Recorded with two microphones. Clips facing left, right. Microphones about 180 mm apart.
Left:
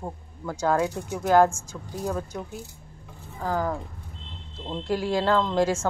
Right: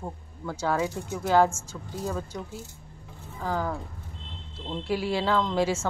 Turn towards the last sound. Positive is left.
turn(degrees=10)  # may be behind; listen again after turning